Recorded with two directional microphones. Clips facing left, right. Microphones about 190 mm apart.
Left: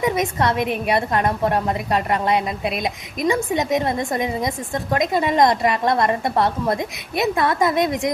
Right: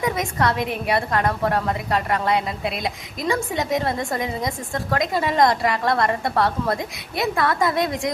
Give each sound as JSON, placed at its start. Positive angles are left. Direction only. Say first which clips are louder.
{"t": 0.0, "sound": "a woman's voice", "louder": "left 2 dB", "side_deg": 20}